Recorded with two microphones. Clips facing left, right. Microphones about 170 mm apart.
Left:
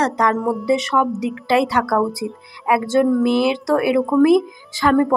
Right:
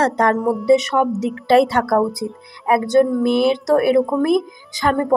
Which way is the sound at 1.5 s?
50° right (ahead or behind).